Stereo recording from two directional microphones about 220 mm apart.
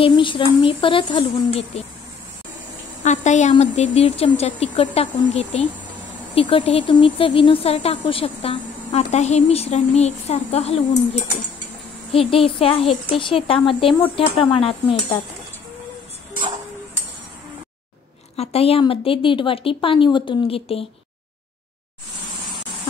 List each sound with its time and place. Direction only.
0.0 s a woman's voice: 25° left (ahead or behind)
3.0 s a woman's voice: 30° left (ahead or behind)
12.1 s a woman's voice: 25° left (ahead or behind)
18.3 s a woman's voice: 25° left (ahead or behind)